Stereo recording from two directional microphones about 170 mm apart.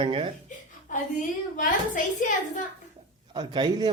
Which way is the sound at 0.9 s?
50° left (ahead or behind).